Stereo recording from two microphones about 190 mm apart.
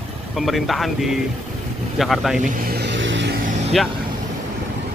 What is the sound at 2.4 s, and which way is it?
Vehicle, 55° right (ahead or behind).